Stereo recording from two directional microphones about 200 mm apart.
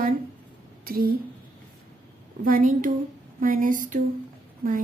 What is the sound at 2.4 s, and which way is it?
A woman's voice, 45° right (ahead or behind).